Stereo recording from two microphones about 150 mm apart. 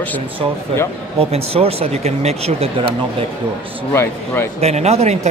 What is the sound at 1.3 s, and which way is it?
Speech, 40° right (ahead or behind).